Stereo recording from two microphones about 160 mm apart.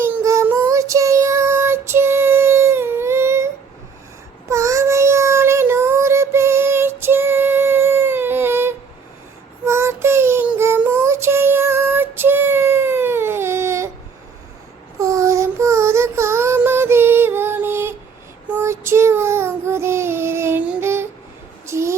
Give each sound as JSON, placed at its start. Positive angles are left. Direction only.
{"t": 0.0, "sound": "child singing", "side_deg": -15}
{"t": 14.9, "sound": "child singing", "side_deg": -20}
{"t": 21.7, "sound": "a sound", "side_deg": -15}